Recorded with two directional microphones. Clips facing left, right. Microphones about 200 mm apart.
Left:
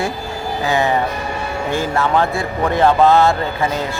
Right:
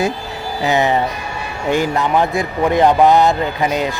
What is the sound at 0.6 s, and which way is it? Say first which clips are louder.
Speech: right 2 dB; 20° right (ahead or behind).